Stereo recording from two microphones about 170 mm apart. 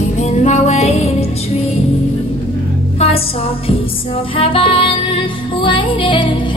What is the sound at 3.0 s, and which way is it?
Music, 35° left (ahead or behind).